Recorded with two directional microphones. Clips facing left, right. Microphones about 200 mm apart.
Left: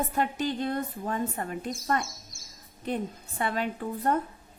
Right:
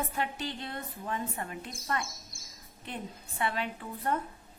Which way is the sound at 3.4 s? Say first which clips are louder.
Left 4 dB; 40° left (ahead or behind).